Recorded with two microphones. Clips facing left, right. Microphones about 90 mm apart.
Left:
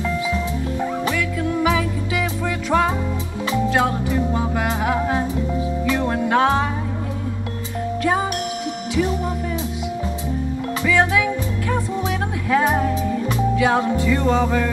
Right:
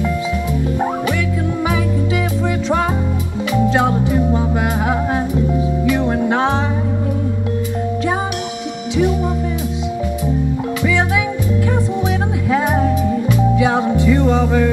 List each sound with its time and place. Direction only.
3.7 s music: 25° right (ahead or behind)
5.9 s music: 25° right (ahead or behind)
12.4 s music: 20° right (ahead or behind)